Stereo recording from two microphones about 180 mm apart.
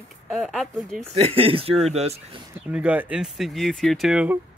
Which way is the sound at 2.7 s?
5° right (ahead or behind).